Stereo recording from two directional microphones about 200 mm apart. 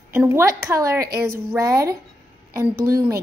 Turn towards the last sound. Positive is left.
turn(degrees=-15)  # may be behind; listen again after turning